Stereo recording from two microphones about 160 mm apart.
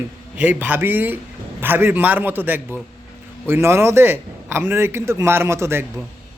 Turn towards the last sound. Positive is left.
turn(degrees=-15)  # may be behind; listen again after turning